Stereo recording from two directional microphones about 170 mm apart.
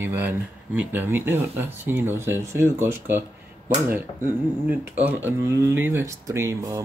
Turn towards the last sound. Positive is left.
turn(degrees=-20)  # may be behind; listen again after turning